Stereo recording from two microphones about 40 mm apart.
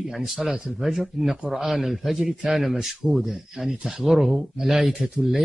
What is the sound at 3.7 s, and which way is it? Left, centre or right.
Speech, centre.